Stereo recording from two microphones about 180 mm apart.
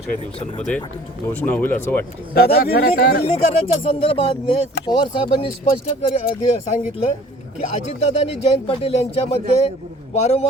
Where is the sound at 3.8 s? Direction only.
30° left (ahead or behind).